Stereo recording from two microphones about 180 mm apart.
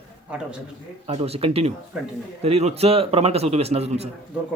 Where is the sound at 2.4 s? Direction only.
35° right (ahead or behind).